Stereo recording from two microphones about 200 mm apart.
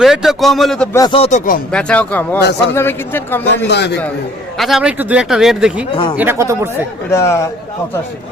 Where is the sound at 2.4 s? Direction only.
60° left (ahead or behind).